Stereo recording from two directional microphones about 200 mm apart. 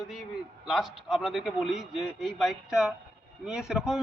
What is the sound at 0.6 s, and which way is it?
A man's voice, centre (ahead or behind).